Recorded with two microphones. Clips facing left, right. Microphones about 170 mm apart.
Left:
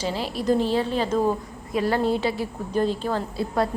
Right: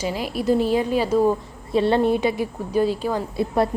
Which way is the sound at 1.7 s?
25° right (ahead or behind).